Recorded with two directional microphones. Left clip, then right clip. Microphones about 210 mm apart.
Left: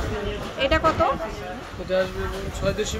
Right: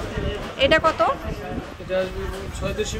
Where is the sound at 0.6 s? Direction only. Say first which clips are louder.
Right 3 dB; 15° right (ahead or behind).